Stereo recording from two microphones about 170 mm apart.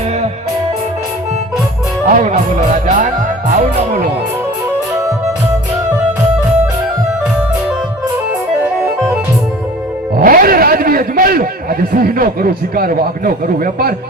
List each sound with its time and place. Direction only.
2.1 s music: 45° right (ahead or behind)
10.2 s a man's voice: 60° right (ahead or behind)